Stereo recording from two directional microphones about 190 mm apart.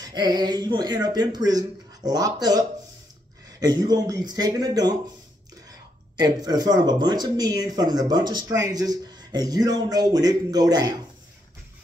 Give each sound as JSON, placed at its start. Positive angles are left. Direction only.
{"t": 0.0, "sound": "speech", "side_deg": -20}
{"t": 6.1, "sound": "speech", "side_deg": -20}